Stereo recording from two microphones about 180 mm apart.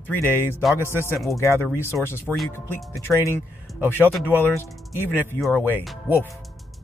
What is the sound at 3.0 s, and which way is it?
Speech, 15° left (ahead or behind).